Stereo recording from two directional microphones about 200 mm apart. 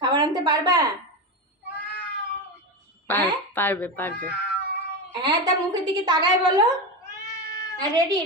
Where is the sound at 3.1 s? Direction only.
10° left (ahead or behind).